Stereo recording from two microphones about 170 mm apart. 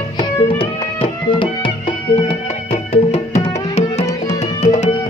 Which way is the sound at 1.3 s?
30° left (ahead or behind).